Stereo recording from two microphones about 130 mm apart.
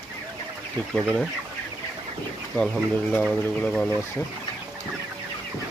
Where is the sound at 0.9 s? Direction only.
Centre (ahead or behind).